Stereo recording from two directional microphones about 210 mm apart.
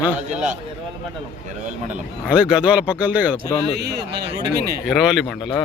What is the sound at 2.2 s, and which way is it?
Speech, 5° right (ahead or behind).